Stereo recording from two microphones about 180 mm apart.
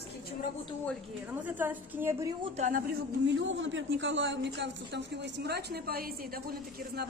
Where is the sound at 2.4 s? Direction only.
40° right (ahead or behind).